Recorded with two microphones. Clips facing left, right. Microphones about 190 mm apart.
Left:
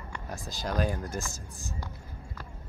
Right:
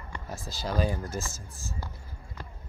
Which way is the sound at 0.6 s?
5° right (ahead or behind).